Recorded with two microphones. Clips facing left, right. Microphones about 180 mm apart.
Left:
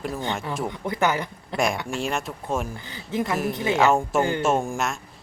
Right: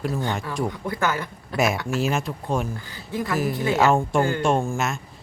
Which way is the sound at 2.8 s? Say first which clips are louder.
Left 2 dB; 20° left (ahead or behind).